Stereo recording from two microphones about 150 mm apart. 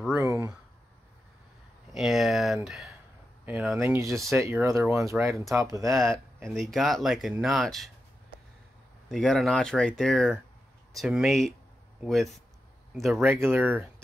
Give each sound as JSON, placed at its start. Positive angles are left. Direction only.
{"t": 0.1, "sound": "a sound", "side_deg": -20}
{"t": 2.0, "sound": "speech", "side_deg": 0}
{"t": 3.8, "sound": "speech", "side_deg": -20}
{"t": 6.4, "sound": "speech", "side_deg": 0}
{"t": 9.1, "sound": "speech", "side_deg": 0}
{"t": 13.4, "sound": "speech", "side_deg": -15}